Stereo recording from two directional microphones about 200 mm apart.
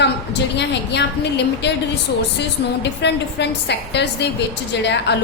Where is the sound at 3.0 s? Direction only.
60° left (ahead or behind).